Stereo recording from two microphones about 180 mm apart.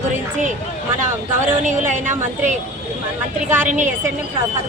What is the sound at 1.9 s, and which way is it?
Speech, 45° right (ahead or behind).